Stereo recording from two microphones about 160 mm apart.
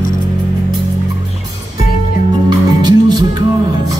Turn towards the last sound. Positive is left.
turn(degrees=-25)  # may be behind; listen again after turning